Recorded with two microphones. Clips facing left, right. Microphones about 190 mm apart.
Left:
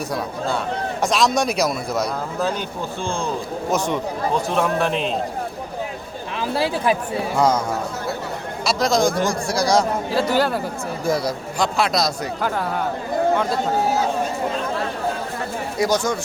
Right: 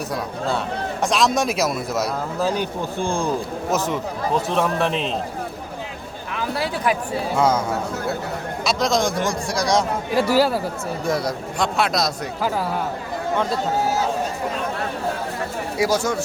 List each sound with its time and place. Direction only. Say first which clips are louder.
0.1 s speech: right 1 dB; centre (ahead or behind)
3.7 s speech: left 1 dB; 5° right (ahead or behind)
6.3 s speech: left 3 dB; 30° left (ahead or behind)
7.3 s speech: left 1 dB; 5° right (ahead or behind)
8.6 s speech: left 2 dB; centre (ahead or behind)
15.8 s speech: even; 5° right (ahead or behind)